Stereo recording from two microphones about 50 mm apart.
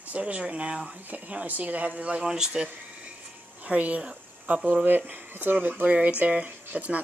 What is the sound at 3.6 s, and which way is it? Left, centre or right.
Speech, right.